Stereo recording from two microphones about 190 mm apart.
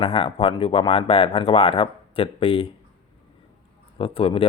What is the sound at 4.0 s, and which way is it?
Speech, 30° left (ahead or behind).